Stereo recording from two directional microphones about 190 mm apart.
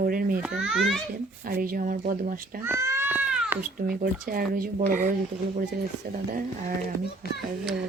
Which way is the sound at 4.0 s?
50° right (ahead or behind).